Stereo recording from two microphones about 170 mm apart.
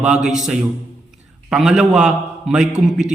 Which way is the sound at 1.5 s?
5° right (ahead or behind).